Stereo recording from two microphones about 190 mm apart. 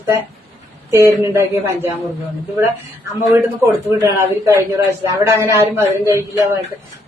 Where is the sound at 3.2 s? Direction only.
15° right (ahead or behind).